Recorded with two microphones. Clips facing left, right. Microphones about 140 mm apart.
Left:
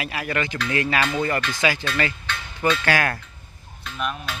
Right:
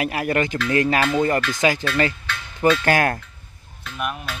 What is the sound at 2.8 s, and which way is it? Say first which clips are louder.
Speech: right 3 dB; 45° right (ahead or behind).